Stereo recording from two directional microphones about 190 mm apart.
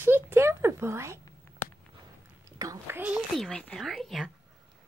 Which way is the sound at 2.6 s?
15° right (ahead or behind).